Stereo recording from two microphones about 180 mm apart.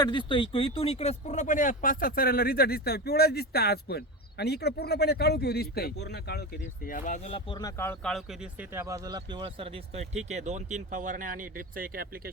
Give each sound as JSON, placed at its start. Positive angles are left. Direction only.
{"t": 0.0, "sound": "speech", "side_deg": 25}
{"t": 6.8, "sound": "speech", "side_deg": 45}
{"t": 7.3, "sound": "speech", "side_deg": 30}
{"t": 7.8, "sound": "speech", "side_deg": 5}
{"t": 8.7, "sound": "speech", "side_deg": -15}